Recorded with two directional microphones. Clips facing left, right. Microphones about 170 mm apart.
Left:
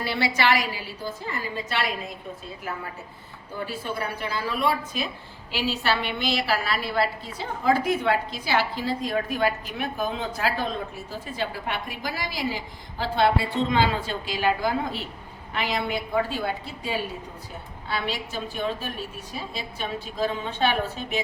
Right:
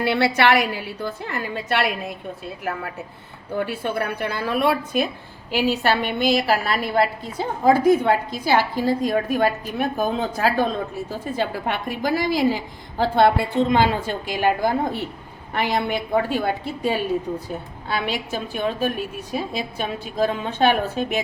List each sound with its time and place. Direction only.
0.0 s a woman's voice: 60° right (ahead or behind)
3.6 s a woman's voice: 60° right (ahead or behind)